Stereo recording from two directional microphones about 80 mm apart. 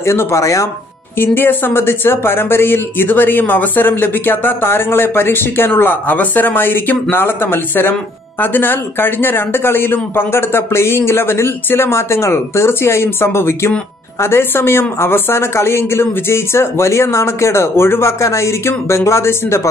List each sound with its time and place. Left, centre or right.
0.0 s speech: left
1.1 s speech: left